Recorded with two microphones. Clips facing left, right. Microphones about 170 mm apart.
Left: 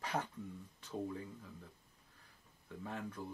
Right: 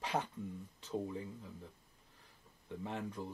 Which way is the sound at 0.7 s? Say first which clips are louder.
Right 2 dB; 20° right (ahead or behind).